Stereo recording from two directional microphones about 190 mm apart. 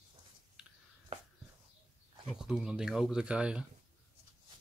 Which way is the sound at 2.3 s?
5° right (ahead or behind).